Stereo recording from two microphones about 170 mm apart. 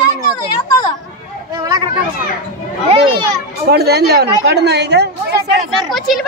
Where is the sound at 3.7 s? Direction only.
70° right (ahead or behind).